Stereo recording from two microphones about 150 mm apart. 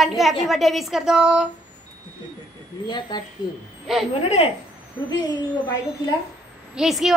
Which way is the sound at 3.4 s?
25° left (ahead or behind).